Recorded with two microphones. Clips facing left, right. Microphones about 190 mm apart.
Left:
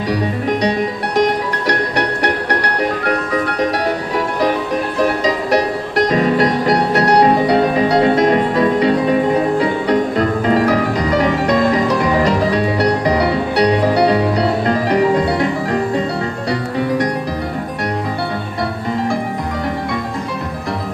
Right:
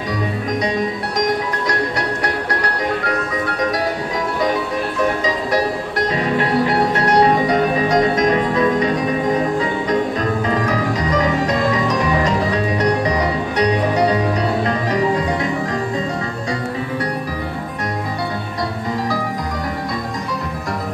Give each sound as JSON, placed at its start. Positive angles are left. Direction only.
{"t": 1.1, "sound": "music", "side_deg": 70}
{"t": 6.1, "sound": "music", "side_deg": 40}